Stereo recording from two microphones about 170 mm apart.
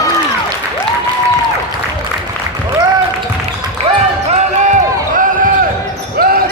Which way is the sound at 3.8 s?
40° right (ahead or behind).